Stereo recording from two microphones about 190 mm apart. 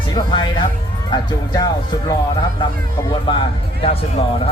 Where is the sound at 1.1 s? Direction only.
20° left (ahead or behind).